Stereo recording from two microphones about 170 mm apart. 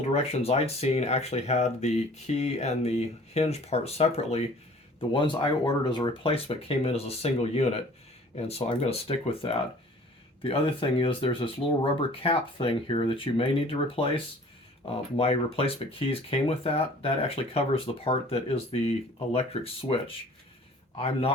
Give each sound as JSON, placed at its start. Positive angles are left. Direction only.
{"t": 0.1, "sound": "speech", "side_deg": 35}
{"t": 4.9, "sound": "speech", "side_deg": 30}